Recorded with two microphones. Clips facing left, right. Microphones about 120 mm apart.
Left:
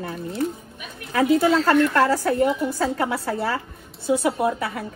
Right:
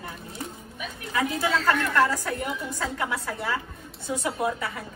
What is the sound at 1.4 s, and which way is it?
A woman's voice, 30° left (ahead or behind).